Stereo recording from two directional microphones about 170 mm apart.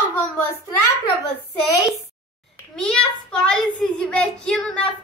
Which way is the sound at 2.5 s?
5° left (ahead or behind).